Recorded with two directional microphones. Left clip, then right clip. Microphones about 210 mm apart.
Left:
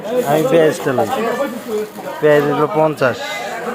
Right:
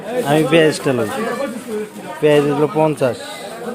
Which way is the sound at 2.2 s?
30° right (ahead or behind).